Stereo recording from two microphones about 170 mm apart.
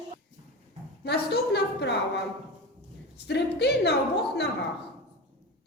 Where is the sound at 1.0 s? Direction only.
75° left (ahead or behind).